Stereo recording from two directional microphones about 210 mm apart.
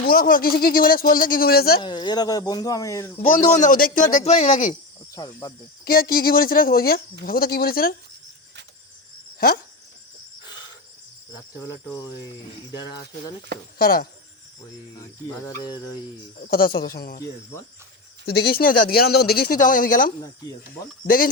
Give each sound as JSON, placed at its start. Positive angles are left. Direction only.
{"t": 0.0, "sound": "speech", "side_deg": 45}
{"t": 1.8, "sound": "speech", "side_deg": 20}
{"t": 3.3, "sound": "a man's voice", "side_deg": 40}
{"t": 5.1, "sound": "cricket", "side_deg": 15}
{"t": 5.8, "sound": "speech", "side_deg": 45}
{"t": 11.6, "sound": "cricket", "side_deg": 15}
{"t": 12.7, "sound": "speech", "side_deg": 20}
{"t": 13.7, "sound": "speech", "side_deg": 45}
{"t": 15.3, "sound": "cricket", "side_deg": 20}
{"t": 16.4, "sound": "speech", "side_deg": 45}
{"t": 18.3, "sound": "speech", "side_deg": 50}